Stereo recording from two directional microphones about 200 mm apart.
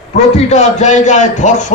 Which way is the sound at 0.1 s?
35° left (ahead or behind).